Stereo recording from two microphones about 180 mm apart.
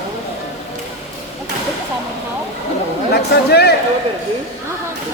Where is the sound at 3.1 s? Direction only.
65° left (ahead or behind).